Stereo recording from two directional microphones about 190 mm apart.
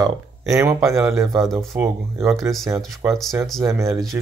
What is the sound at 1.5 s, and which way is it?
Speech, 15° right (ahead or behind).